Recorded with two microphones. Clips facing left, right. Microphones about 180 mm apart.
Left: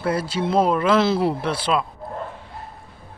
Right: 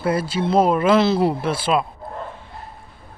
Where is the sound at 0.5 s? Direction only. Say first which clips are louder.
Right 2 dB; 5° right (ahead or behind).